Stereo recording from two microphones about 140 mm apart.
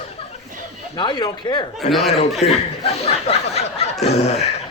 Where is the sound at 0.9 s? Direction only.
30° left (ahead or behind).